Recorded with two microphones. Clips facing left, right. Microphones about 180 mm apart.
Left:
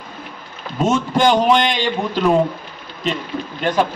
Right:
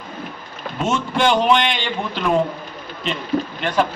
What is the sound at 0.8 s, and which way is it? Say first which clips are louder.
A man's voice: left 3 dB; 40° left (ahead or behind).